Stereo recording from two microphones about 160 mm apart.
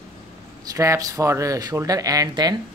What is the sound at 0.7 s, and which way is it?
Speech, 20° right (ahead or behind).